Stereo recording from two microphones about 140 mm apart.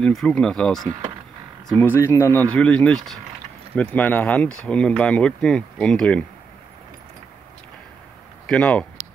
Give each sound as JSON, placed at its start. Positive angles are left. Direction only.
{"t": 0.0, "sound": "speech", "side_deg": 5}
{"t": 1.8, "sound": "speech", "side_deg": 15}
{"t": 8.5, "sound": "speech", "side_deg": 10}